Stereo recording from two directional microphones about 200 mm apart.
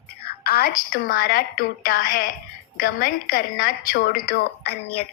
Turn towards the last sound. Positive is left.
turn(degrees=50)  # may be behind; listen again after turning